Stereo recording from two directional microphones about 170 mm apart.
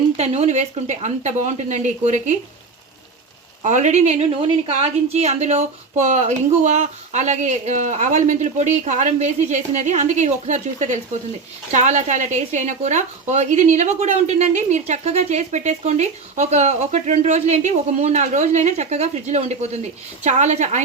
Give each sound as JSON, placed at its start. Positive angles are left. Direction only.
{"t": 0.2, "sound": "a woman's voice", "side_deg": -40}
{"t": 3.6, "sound": "a woman's voice", "side_deg": -45}